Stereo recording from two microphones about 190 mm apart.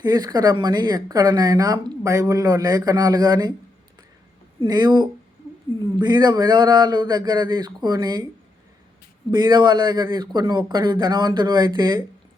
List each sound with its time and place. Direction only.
0.0 s speech: 20° right (ahead or behind)
4.6 s speech: 20° right (ahead or behind)
9.3 s speech: 25° right (ahead or behind)